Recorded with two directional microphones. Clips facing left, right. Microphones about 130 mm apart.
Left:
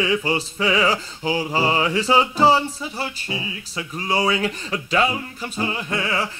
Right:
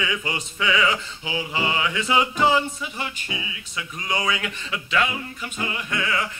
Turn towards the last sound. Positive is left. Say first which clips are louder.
# left 2 dB
turn(degrees=30)  # may be behind; listen again after turning